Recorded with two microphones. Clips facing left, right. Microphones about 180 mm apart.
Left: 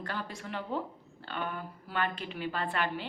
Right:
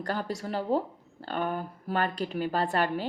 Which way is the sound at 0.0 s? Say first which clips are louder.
Right 7 dB; 40° right (ahead or behind).